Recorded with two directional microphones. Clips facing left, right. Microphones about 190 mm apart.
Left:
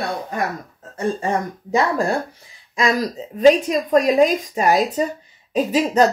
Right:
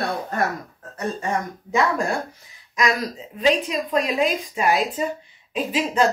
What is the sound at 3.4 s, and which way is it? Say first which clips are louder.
Speech: left 7 dB; 45° left (ahead or behind).